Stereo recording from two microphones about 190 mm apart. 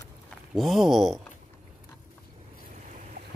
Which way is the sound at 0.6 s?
Centre (ahead or behind).